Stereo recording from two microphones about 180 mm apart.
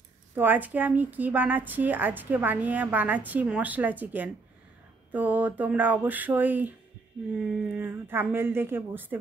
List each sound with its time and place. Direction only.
0.4 s a woman's voice: 10° right (ahead or behind)